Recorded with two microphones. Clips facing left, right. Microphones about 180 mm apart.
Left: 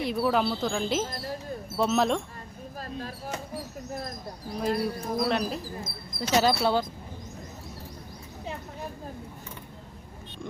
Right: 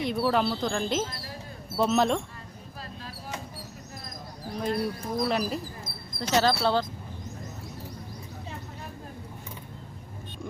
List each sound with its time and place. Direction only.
0.0 s speech: centre (ahead or behind)
2.8 s a sound: 45° left (ahead or behind)
4.5 s speech: centre (ahead or behind)
6.1 s speech: 10° left (ahead or behind)